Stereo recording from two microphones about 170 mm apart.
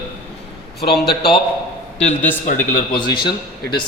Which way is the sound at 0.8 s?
70° left (ahead or behind).